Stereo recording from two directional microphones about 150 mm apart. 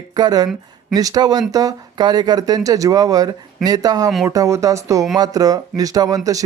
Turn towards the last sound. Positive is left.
turn(degrees=-25)  # may be behind; listen again after turning